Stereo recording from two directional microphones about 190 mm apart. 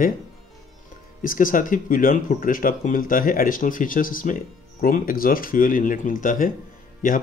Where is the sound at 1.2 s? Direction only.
45° left (ahead or behind).